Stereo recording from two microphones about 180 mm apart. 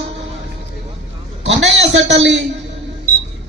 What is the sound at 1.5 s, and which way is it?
Speech, 85° right.